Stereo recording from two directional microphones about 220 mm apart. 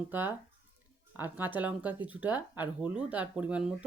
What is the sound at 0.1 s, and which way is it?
Speech, 10° right (ahead or behind).